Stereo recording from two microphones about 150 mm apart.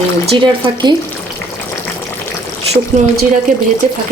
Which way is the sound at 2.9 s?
50° right (ahead or behind).